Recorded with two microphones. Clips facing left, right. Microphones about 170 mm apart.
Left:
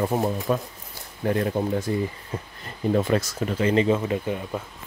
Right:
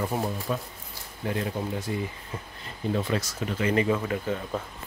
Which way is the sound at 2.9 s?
50° left (ahead or behind).